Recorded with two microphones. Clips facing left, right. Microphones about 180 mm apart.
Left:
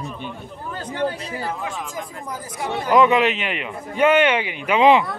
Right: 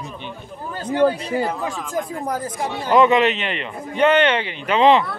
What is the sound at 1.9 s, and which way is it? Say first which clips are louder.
Speech: right 7 dB; 55° right (ahead or behind).